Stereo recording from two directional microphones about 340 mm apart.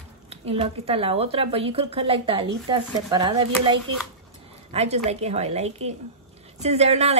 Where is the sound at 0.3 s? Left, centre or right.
Centre.